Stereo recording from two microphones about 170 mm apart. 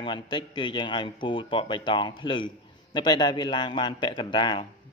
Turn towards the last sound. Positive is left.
turn(degrees=30)  # may be behind; listen again after turning